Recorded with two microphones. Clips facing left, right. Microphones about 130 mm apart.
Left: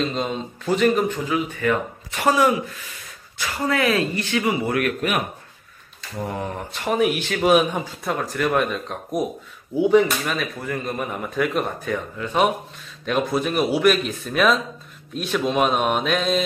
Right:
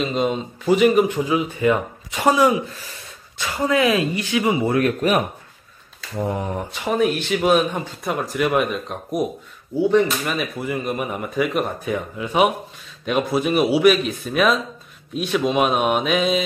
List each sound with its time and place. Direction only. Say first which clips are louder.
0.0 s speech: right 3 dB; 5° right (ahead or behind); by 5.2 s 30° right (ahead or behind)
6.1 s a sound: right 4 dB; 20° right (ahead or behind)
6.7 s speech: even; 5° right (ahead or behind)
9.8 s speech: left 1 dB; 10° left (ahead or behind)
10.2 s speech: right 2 dB; 5° right (ahead or behind)